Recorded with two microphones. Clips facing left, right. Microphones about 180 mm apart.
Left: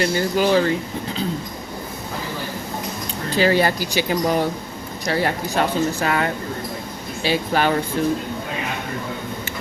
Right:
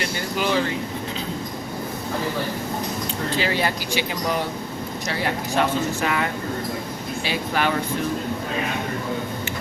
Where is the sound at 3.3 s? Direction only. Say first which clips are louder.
Left 7 dB; 40° left (ahead or behind).